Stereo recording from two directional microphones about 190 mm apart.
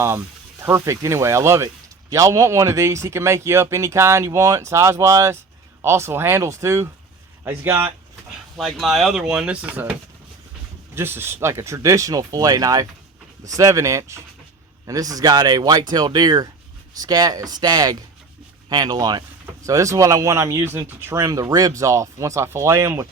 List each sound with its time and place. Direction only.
0.0 s speech: 15° right (ahead or behind)
8.5 s speech: centre (ahead or behind)